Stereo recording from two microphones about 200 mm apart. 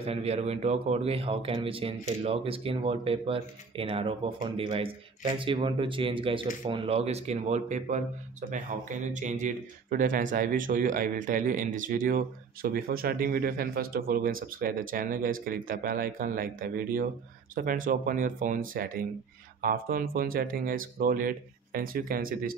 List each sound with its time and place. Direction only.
0.0 s speech: 30° right (ahead or behind); by 22.6 s 45° right (ahead or behind)